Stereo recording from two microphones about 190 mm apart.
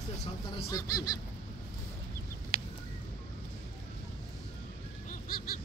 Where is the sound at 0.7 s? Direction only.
15° left (ahead or behind).